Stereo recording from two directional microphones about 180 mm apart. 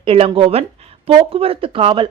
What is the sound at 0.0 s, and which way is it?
Speech, 30° right (ahead or behind).